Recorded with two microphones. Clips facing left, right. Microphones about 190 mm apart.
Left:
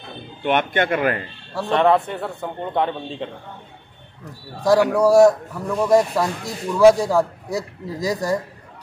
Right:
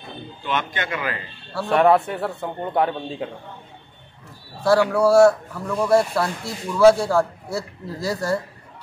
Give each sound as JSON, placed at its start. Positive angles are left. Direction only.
{"t": 0.4, "sound": "a man's voice", "side_deg": 60}
{"t": 1.7, "sound": "a man's voice", "side_deg": -5}
{"t": 4.6, "sound": "a man's voice", "side_deg": 15}